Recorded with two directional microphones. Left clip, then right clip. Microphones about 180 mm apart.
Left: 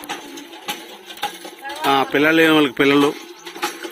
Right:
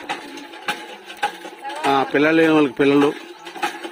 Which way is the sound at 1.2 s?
Centre (ahead or behind).